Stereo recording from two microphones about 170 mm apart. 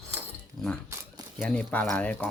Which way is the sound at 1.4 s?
10° left (ahead or behind).